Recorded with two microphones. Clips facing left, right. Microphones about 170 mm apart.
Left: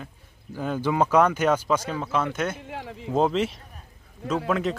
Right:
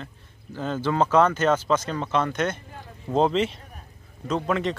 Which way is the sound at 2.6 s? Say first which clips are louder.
Left 7 dB; 90° left.